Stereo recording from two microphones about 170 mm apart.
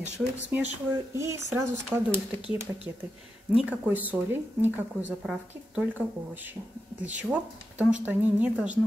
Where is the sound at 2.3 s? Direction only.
30° left (ahead or behind).